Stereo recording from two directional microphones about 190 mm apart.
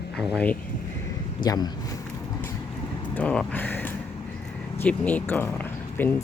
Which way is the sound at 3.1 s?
5° left (ahead or behind).